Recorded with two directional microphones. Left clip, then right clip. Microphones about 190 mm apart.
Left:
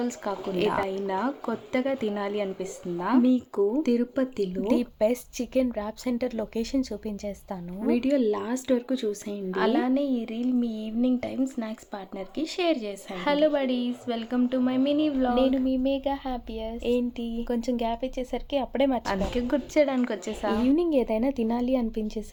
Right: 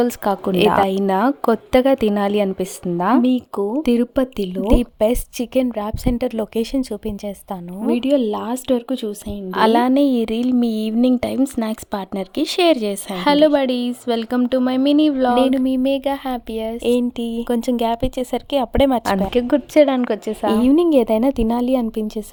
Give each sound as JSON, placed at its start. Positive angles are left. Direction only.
{"t": 0.0, "sound": "a woman's voice", "side_deg": -50}
{"t": 3.2, "sound": "speech", "side_deg": -35}
{"t": 9.6, "sound": "a woman's voice", "side_deg": -50}